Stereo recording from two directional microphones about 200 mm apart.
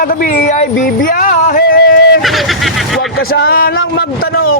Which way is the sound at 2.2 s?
Centre (ahead or behind).